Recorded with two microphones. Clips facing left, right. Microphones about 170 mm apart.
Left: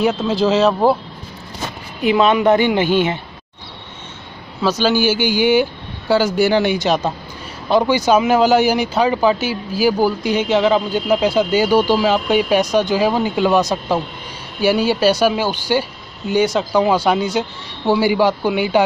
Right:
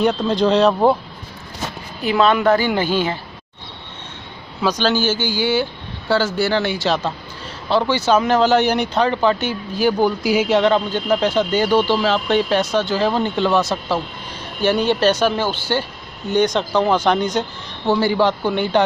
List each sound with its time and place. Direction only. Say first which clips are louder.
0.0 s speech: even; 5° left (ahead or behind)
2.1 s speech: even; 5° left (ahead or behind)
2.4 s a man's voice: left 2 dB; 20° left (ahead or behind)
4.7 s speech: left 4 dB; 10° left (ahead or behind)